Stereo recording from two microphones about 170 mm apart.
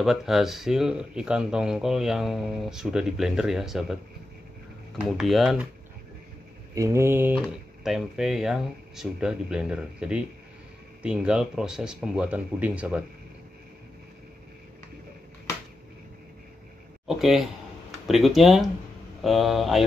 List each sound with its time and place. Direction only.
0.0 s speech: centre (ahead or behind)
5.0 s speech: centre (ahead or behind)
6.7 s mantra: 20° right (ahead or behind)
7.3 s speech: centre (ahead or behind)
17.1 s speech: centre (ahead or behind)